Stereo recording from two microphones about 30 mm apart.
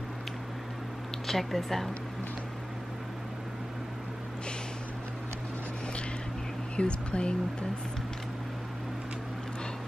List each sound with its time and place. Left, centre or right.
1.2 s speech: centre
6.8 s speech: left